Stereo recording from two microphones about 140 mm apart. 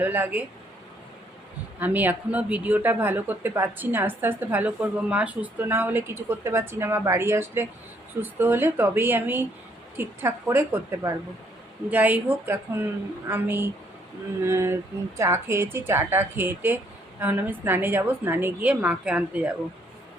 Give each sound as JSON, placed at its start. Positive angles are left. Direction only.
{"t": 0.0, "sound": "a woman's voice", "side_deg": -15}
{"t": 1.8, "sound": "a woman's voice", "side_deg": -15}
{"t": 14.4, "sound": "a sound", "side_deg": -20}
{"t": 15.2, "sound": "a woman's voice", "side_deg": -20}